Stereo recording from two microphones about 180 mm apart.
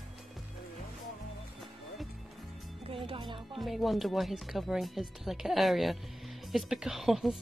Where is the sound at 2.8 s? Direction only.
30° right (ahead or behind).